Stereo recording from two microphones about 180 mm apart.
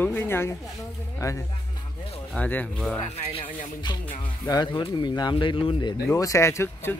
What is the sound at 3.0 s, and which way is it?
Speech, 35° left (ahead or behind).